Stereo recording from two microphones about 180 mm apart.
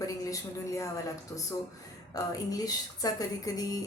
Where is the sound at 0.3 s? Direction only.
15° left (ahead or behind).